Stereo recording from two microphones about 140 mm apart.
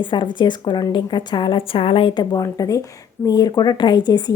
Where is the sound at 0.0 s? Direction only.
35° left (ahead or behind).